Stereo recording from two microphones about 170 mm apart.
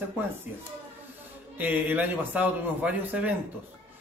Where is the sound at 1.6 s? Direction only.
10° right (ahead or behind).